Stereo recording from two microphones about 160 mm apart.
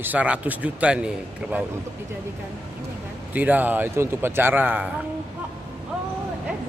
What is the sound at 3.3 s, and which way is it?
Speech, 10° right (ahead or behind).